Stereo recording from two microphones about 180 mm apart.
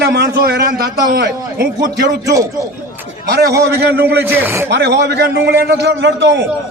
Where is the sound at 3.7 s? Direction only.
65° right (ahead or behind).